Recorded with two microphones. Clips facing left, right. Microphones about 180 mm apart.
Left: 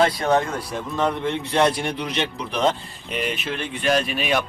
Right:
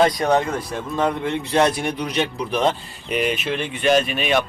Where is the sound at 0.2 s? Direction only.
15° right (ahead or behind).